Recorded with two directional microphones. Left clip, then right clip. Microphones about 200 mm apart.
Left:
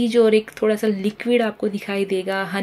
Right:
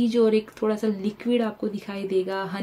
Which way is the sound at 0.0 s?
5° left (ahead or behind).